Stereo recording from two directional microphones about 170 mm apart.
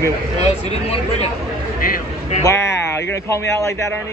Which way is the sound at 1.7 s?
55° left (ahead or behind).